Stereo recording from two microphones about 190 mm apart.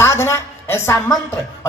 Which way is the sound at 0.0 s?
15° left (ahead or behind).